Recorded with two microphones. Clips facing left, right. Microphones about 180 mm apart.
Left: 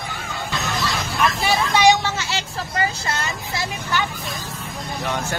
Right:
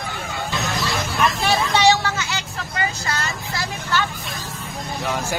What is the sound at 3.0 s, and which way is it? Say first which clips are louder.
Vehicle: even; 20° left (ahead or behind).